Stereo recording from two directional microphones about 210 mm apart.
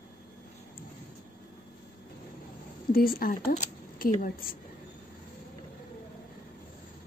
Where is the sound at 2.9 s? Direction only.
45° left (ahead or behind).